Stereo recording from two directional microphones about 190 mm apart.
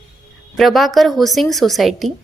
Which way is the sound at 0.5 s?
Centre (ahead or behind).